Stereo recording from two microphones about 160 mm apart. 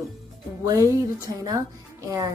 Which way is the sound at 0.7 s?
20° right (ahead or behind).